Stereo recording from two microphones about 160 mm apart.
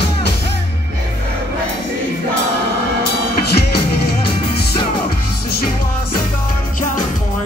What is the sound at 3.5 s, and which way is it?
Music, 80° left.